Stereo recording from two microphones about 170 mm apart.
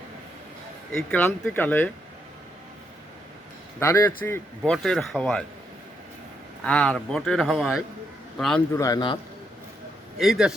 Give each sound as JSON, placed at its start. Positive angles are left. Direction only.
{"t": 0.9, "sound": "speech", "side_deg": 10}
{"t": 3.8, "sound": "speech", "side_deg": 15}
{"t": 6.7, "sound": "speech", "side_deg": 5}
{"t": 8.7, "sound": "a man's voice", "side_deg": 20}
{"t": 10.2, "sound": "speech", "side_deg": -5}